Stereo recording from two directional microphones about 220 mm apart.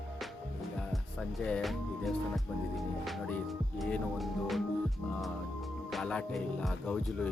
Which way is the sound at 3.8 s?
Centre (ahead or behind).